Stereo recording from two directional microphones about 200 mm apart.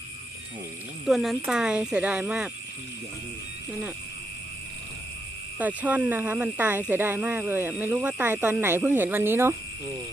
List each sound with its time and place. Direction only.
1.0 s speech: centre (ahead or behind)
3.7 s speech: 10° right (ahead or behind)
5.5 s speech: 10° right (ahead or behind)